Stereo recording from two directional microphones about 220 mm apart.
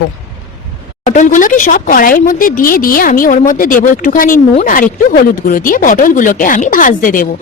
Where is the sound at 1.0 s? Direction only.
35° left (ahead or behind).